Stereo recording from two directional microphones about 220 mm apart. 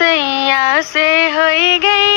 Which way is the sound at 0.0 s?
50° left (ahead or behind).